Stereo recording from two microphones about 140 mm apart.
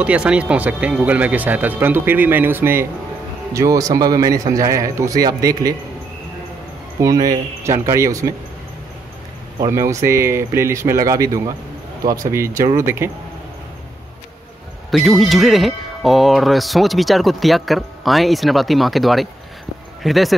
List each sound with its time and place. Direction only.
0.0 s a man's voice: 10° right (ahead or behind); by 5.8 s 25° right (ahead or behind)
7.0 s a man's voice: 25° right (ahead or behind)
9.7 s a man's voice: 20° right (ahead or behind)
14.9 s speech: centre (ahead or behind)